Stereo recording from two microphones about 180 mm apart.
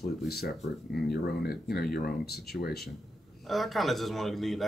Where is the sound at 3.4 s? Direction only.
Centre (ahead or behind).